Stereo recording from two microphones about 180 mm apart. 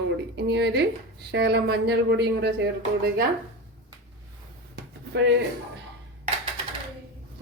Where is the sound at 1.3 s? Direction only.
65° right (ahead or behind).